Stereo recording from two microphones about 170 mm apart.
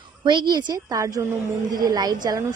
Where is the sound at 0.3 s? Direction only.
25° right (ahead or behind).